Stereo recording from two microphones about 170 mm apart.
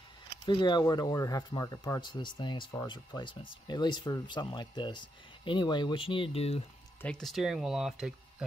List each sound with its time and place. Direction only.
0.5 s speech: 25° left (ahead or behind)
7.0 s speech: 5° left (ahead or behind)